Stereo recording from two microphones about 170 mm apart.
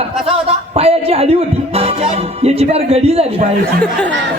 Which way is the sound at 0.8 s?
35° right (ahead or behind).